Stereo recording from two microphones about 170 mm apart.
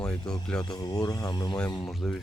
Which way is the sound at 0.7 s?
20° left (ahead or behind).